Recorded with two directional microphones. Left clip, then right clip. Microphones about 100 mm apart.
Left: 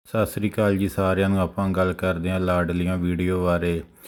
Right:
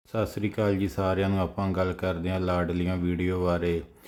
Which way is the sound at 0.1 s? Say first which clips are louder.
Left 5 dB; 45° left (ahead or behind).